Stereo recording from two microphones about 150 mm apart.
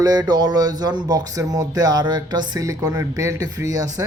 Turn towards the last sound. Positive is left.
turn(degrees=-20)  # may be behind; listen again after turning